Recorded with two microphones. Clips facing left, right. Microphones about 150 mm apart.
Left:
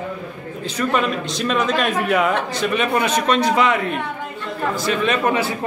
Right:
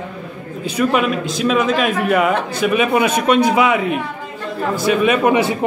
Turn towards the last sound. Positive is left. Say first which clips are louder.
# right 5 dB
turn(degrees=-15)  # may be behind; listen again after turning